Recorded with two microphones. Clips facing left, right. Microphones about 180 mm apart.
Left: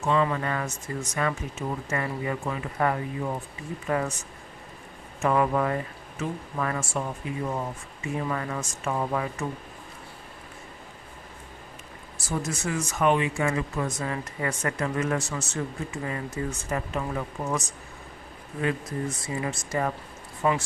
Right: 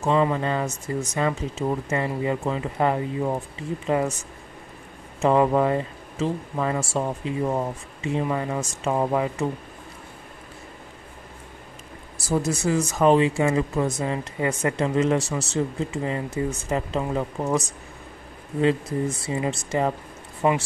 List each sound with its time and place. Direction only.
0.0 s speech: 30° right (ahead or behind)
5.2 s speech: 30° right (ahead or behind)
12.3 s speech: 30° right (ahead or behind)